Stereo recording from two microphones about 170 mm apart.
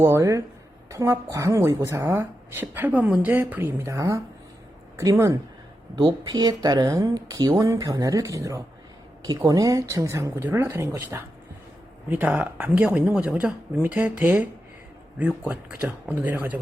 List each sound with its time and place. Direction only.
0.0 s speech: 15° right (ahead or behind)